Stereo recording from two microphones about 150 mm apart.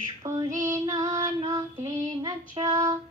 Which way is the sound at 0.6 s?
20° right (ahead or behind).